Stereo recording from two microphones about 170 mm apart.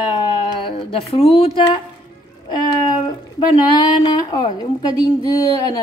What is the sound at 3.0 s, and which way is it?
Speech, 25° left (ahead or behind).